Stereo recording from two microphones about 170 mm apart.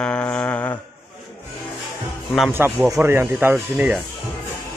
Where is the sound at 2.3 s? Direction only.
10° right (ahead or behind).